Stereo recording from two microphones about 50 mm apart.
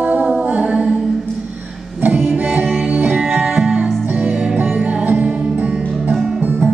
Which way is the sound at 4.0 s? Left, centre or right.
Right.